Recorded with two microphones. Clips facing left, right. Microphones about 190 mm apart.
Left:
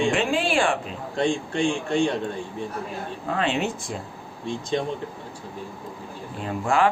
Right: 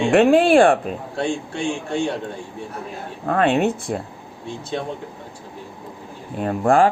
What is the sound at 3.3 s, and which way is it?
Speech, 55° right (ahead or behind).